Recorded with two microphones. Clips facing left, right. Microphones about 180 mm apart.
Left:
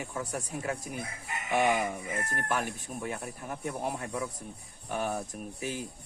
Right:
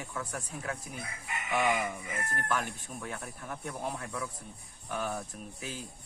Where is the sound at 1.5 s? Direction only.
40° left (ahead or behind).